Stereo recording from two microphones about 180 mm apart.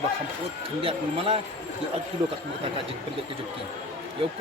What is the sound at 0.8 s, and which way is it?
Speech, 30° right (ahead or behind).